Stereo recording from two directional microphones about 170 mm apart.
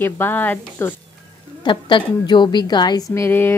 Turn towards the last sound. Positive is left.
turn(degrees=15)  # may be behind; listen again after turning